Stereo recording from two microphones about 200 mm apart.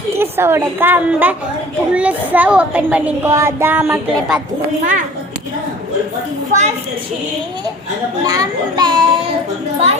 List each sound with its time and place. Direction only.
0.2 s speech: 10° right (ahead or behind)
6.5 s a child's voice: 40° right (ahead or behind)
8.2 s a child's voice: 20° right (ahead or behind)